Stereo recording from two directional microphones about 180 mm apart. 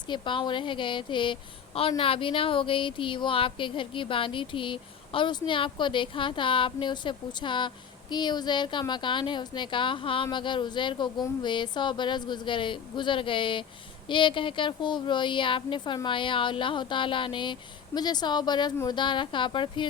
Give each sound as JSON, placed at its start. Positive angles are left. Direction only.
{"t": 0.1, "sound": "a woman's voice", "side_deg": 25}